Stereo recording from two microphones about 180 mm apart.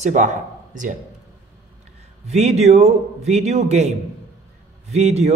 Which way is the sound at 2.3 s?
35° right (ahead or behind).